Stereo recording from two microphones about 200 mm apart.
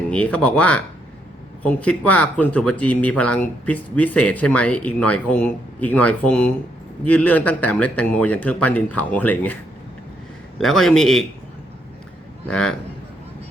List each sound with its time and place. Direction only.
0.1 s speech: 5° left (ahead or behind)
10.6 s a man's voice: centre (ahead or behind)
12.5 s a man's voice: 5° left (ahead or behind)